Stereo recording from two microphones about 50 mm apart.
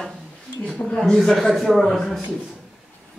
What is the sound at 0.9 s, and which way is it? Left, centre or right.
A man's voice, centre.